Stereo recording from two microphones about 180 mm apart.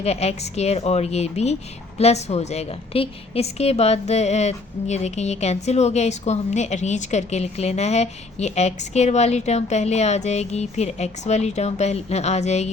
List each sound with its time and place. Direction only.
0.0 s a woman's voice: 35° left (ahead or behind)